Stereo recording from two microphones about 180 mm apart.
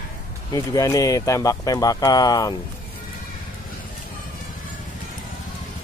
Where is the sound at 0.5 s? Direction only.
20° left (ahead or behind).